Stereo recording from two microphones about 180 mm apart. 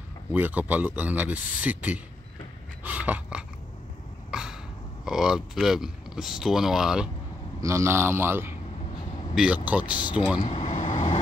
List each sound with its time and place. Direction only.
0.3 s speech: 10° right (ahead or behind)
2.8 s a sound: 10° right (ahead or behind)
5.0 s speech: centre (ahead or behind)
7.6 s speech: 15° right (ahead or behind)
9.9 s speech: 25° left (ahead or behind)
10.5 s speech: 35° left (ahead or behind)